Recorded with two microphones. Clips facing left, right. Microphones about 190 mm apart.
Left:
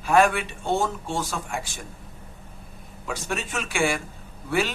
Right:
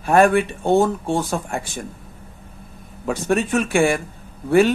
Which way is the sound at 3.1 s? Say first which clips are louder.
Right 11 dB; 55° right (ahead or behind).